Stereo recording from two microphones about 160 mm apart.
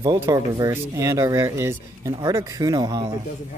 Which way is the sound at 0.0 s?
25° right (ahead or behind).